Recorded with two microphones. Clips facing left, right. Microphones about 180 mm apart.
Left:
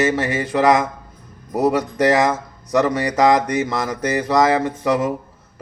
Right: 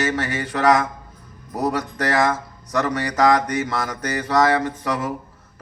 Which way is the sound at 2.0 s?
15° left (ahead or behind).